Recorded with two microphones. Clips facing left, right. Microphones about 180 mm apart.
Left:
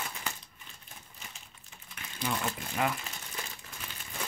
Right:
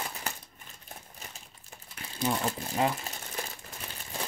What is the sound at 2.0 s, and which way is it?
Speech, 30° right (ahead or behind).